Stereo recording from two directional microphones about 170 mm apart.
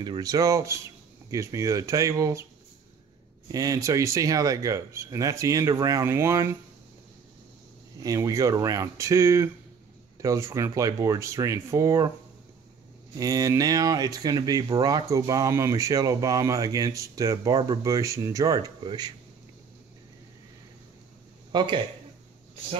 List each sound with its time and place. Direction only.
0.0 s speech: 25° right (ahead or behind)
3.5 s speech: 20° right (ahead or behind)
8.0 s speech: 20° right (ahead or behind)
13.2 s speech: 20° right (ahead or behind)
21.5 s speech: 25° right (ahead or behind)